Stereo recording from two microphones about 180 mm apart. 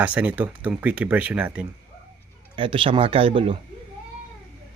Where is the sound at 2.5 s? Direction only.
30° right (ahead or behind).